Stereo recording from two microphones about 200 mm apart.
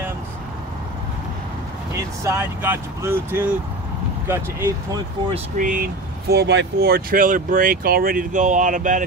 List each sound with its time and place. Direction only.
2.2 s speech: 10° right (ahead or behind)
5.6 s speech: 45° right (ahead or behind)